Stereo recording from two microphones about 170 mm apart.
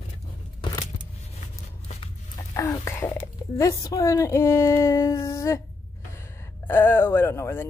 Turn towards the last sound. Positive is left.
turn(degrees=15)  # may be behind; listen again after turning